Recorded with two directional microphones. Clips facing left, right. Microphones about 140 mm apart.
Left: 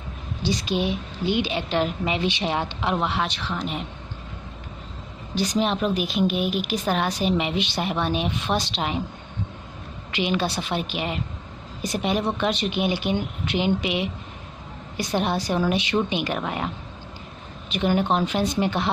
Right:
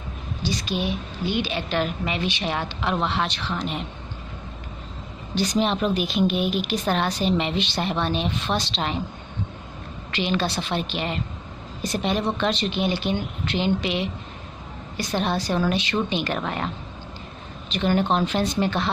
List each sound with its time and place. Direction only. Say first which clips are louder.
0.5 s a woman's voice: left 2 dB; 20° left (ahead or behind)
3.1 s a woman's voice: right 1 dB; 5° left (ahead or behind)
5.3 s a woman's voice: right 1 dB; centre (ahead or behind)
10.1 s a woman's voice: even; 15° left (ahead or behind)
10.4 s a woman's voice: even; 5° left (ahead or behind)
17.7 s a woman's voice: even; 10° left (ahead or behind)
18.6 s a woman's voice: even; 15° left (ahead or behind)